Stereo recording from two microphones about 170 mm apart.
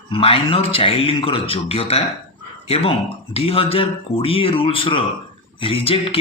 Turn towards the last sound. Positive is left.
turn(degrees=35)  # may be behind; listen again after turning